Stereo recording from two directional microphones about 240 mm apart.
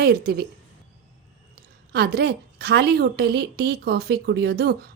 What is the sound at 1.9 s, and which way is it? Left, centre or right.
A woman's voice, right.